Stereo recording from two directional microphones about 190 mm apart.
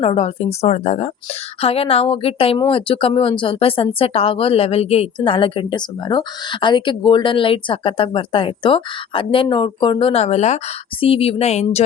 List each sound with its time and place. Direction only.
0.0 s a woman's voice: 30° left (ahead or behind)